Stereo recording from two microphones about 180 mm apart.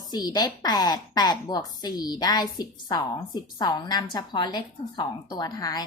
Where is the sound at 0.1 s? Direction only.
20° left (ahead or behind).